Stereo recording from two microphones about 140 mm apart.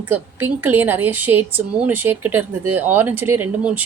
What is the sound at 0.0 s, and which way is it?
A woman's voice, 15° right (ahead or behind).